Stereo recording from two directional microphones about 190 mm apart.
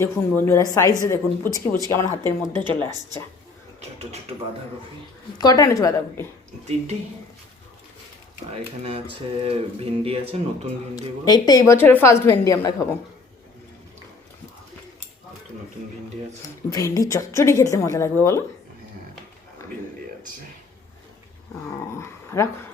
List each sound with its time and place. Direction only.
0.0 s a woman's voice: 15° left (ahead or behind)
3.8 s speech: 35° right (ahead or behind)
5.4 s a woman's voice: 20° left (ahead or behind)
8.8 s speech: 30° right (ahead or behind)
10.9 s a woman's voice: 20° left (ahead or behind)
16.6 s a woman's voice: 15° left (ahead or behind)
21.9 s speech: 15° left (ahead or behind)